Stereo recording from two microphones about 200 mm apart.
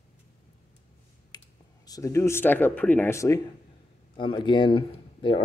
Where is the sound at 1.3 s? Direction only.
20° left (ahead or behind).